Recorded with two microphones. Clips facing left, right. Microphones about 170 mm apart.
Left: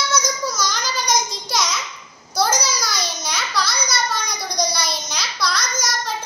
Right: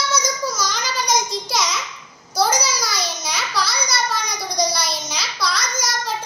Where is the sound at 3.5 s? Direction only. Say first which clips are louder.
Even; 30° right (ahead or behind).